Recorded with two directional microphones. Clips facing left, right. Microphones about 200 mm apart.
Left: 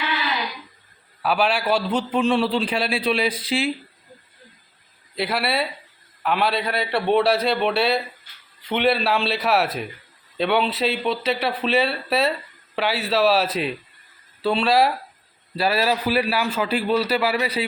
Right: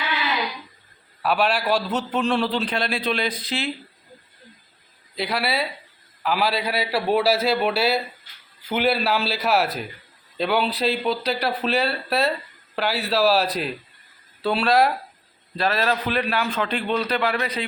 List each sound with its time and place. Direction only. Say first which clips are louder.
1.2 s a man's voice: even; centre (ahead or behind)
5.1 s a man's voice: left 1 dB; centre (ahead or behind)